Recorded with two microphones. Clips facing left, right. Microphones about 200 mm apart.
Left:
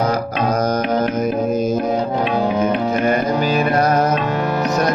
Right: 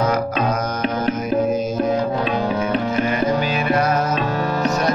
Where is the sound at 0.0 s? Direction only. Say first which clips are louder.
Even; 35° left (ahead or behind).